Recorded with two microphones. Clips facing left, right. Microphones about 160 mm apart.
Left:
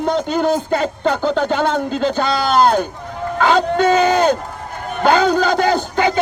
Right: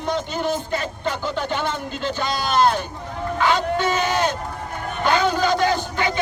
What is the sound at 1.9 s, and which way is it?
A man's voice, 40° left (ahead or behind).